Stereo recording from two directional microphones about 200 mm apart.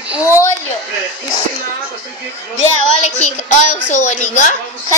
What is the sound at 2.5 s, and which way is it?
Speech, 35° left (ahead or behind).